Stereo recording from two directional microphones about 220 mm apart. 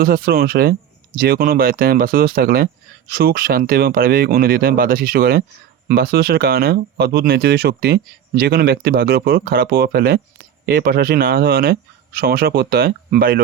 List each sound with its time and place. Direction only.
0.0 s speech: 40° right (ahead or behind)